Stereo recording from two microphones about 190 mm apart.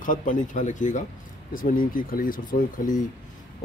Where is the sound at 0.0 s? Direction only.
45° left (ahead or behind).